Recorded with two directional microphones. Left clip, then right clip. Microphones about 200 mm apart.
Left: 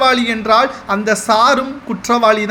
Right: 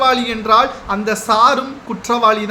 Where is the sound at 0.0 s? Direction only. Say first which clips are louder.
Left 1 dB; 20° left (ahead or behind).